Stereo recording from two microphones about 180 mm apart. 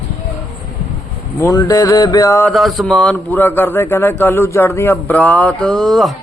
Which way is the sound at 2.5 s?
Centre (ahead or behind).